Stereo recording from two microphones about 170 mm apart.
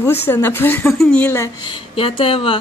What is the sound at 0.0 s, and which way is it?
Speech, 15° left (ahead or behind).